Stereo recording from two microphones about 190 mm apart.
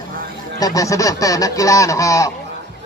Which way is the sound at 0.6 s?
20° left (ahead or behind).